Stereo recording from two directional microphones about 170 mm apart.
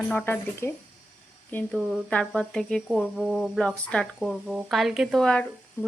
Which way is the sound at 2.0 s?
5° left (ahead or behind).